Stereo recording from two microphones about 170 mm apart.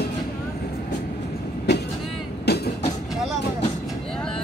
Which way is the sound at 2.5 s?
75° left (ahead or behind).